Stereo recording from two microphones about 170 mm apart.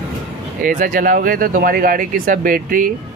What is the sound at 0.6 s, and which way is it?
Speech, 55° right (ahead or behind).